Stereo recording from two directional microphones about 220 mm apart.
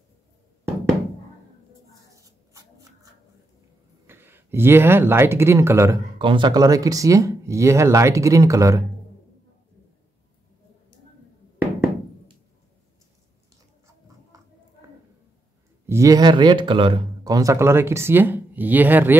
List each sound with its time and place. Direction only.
2.0 s shuffling cards: 15° right (ahead or behind)
4.1 s speech: 10° right (ahead or behind)
15.9 s speech: 15° right (ahead or behind)